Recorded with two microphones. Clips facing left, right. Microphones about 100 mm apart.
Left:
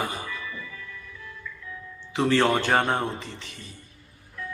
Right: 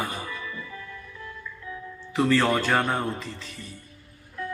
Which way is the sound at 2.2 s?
25° left (ahead or behind).